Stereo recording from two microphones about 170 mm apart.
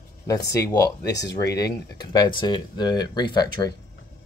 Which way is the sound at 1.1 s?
90° left.